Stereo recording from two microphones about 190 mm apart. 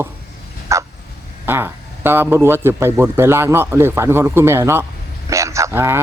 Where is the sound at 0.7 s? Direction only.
15° right (ahead or behind).